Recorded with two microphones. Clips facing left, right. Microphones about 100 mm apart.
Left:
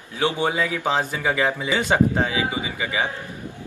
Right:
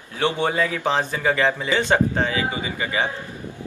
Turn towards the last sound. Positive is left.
turn(degrees=10)  # may be behind; listen again after turning